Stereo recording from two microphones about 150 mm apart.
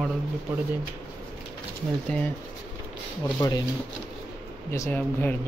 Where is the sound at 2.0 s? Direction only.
10° left (ahead or behind).